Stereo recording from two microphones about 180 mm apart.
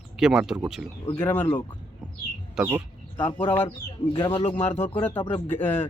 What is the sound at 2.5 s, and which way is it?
Speech, 10° right (ahead or behind).